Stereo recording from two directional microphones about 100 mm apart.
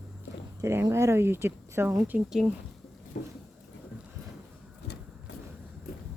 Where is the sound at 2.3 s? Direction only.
5° right (ahead or behind).